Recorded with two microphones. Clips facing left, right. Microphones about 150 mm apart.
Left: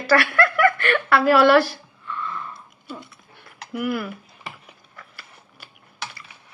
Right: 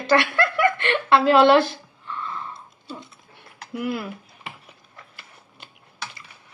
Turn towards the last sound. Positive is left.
turn(degrees=-20)  # may be behind; listen again after turning